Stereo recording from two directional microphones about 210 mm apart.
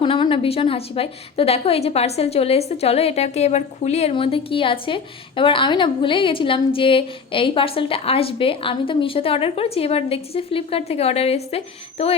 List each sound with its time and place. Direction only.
0.0 s a woman's voice: 25° left (ahead or behind)